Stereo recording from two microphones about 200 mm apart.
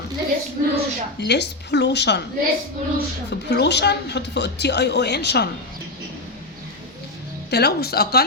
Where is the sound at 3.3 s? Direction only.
60° left (ahead or behind).